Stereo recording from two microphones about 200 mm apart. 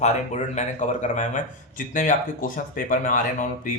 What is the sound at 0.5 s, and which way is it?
Speech, 35° left (ahead or behind).